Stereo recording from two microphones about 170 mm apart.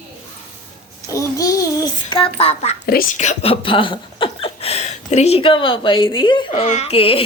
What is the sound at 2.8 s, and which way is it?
Speech, 65° left (ahead or behind).